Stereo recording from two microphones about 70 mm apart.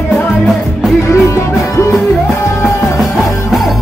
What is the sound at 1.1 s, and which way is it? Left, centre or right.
Music, left.